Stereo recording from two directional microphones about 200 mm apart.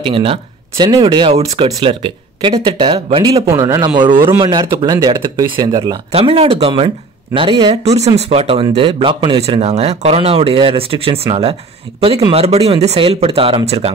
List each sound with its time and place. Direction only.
0.0 s speech: 25° right (ahead or behind)